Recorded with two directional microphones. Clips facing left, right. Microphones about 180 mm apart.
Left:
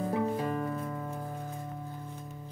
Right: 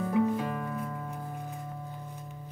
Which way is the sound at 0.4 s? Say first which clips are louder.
Left 2 dB; 35° left (ahead or behind).